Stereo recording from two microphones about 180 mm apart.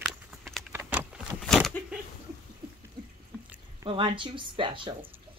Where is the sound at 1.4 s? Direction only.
5° left (ahead or behind).